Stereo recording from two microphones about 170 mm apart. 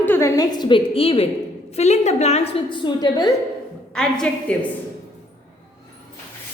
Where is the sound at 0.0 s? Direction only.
15° left (ahead or behind).